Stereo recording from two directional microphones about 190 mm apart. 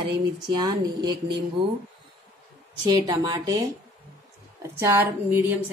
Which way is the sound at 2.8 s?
25° right (ahead or behind).